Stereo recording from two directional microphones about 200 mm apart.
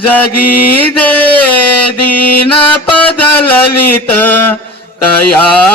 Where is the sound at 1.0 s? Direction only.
10° left (ahead or behind).